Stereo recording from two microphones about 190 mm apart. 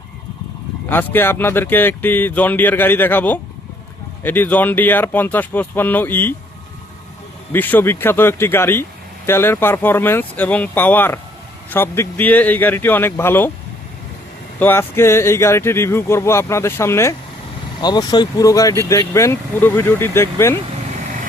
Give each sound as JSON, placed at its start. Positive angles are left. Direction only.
{"t": 0.9, "sound": "a man's voice", "side_deg": 10}
{"t": 7.5, "sound": "a man's voice", "side_deg": 10}
{"t": 14.6, "sound": "a man's voice", "side_deg": 10}